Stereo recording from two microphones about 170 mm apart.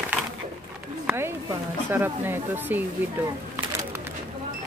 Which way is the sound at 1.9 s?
10° right (ahead or behind).